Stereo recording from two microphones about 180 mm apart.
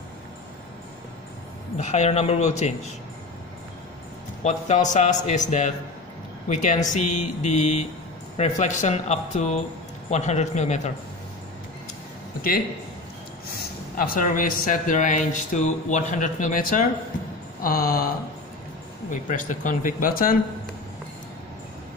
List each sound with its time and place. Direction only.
1.8 s a man's voice: 40° left (ahead or behind)
4.4 s a man's voice: 40° left (ahead or behind)
12.4 s speech: 55° left (ahead or behind)